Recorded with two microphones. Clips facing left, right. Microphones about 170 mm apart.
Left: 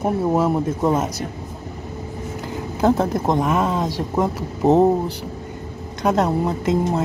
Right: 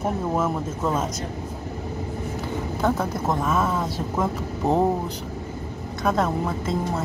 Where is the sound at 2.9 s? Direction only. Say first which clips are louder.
Left 8 dB; 20° left (ahead or behind).